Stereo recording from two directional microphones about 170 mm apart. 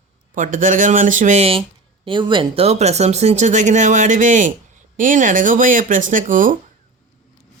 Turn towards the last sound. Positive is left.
turn(degrees=-50)  # may be behind; listen again after turning